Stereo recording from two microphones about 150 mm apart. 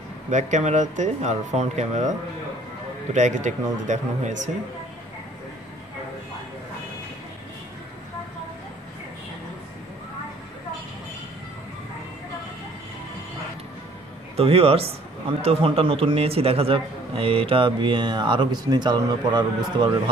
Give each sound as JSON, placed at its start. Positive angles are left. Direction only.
{"t": 0.3, "sound": "speech", "side_deg": -50}
{"t": 14.3, "sound": "speech", "side_deg": -40}